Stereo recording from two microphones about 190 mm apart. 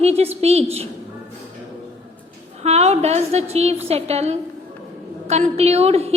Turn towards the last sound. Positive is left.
turn(degrees=-30)  # may be behind; listen again after turning